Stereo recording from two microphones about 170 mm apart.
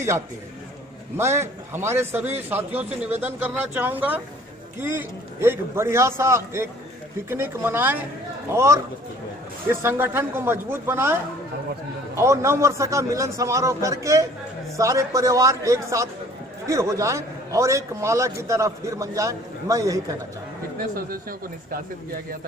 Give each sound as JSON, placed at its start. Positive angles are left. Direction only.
{"t": 1.1, "sound": "a man's voice", "side_deg": -15}
{"t": 12.2, "sound": "a man's voice", "side_deg": -15}
{"t": 20.9, "sound": "speech", "side_deg": -60}